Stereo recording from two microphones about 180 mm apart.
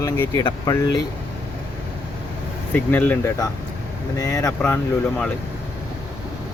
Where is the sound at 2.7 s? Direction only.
10° left (ahead or behind).